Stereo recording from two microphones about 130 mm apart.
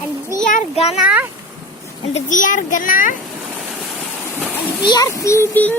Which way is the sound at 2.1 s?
80° left.